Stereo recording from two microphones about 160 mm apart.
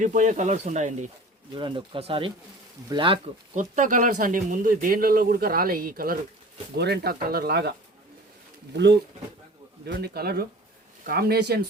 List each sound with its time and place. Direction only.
0.0 s speech: 50° right (ahead or behind)
1.5 s speech: 30° right (ahead or behind)
3.5 s speech: 50° right (ahead or behind)
6.7 s speech: 90° right
8.7 s speech: 90° right